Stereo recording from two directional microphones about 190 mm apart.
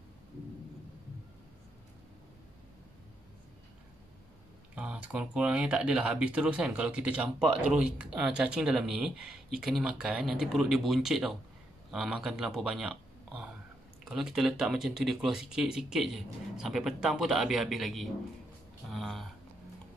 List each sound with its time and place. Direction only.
4.7 s speech: 5° right (ahead or behind)
14.0 s speech: centre (ahead or behind)
18.9 s a sound: centre (ahead or behind)